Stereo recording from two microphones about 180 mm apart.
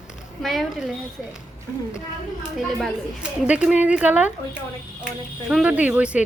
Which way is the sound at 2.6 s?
Centre (ahead or behind).